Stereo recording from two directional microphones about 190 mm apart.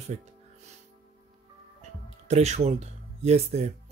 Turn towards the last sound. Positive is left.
turn(degrees=-35)  # may be behind; listen again after turning